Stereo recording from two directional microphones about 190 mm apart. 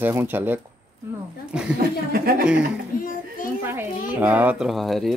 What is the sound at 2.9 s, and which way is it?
Speech, 45° left (ahead or behind).